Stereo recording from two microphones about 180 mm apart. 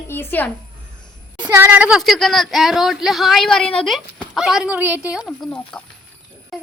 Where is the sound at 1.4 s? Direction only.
10° right (ahead or behind).